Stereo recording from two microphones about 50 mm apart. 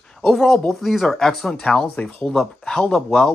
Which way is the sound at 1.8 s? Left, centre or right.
Left.